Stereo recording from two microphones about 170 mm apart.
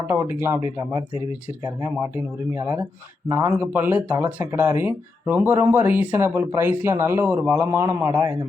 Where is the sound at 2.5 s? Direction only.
15° right (ahead or behind).